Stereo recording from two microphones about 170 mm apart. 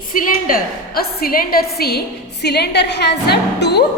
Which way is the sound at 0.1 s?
55° left (ahead or behind).